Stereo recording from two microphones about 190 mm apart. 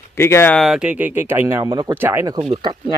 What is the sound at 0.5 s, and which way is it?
Speech, centre (ahead or behind).